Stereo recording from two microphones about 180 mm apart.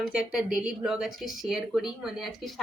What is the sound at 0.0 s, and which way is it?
Speech, 5° right (ahead or behind).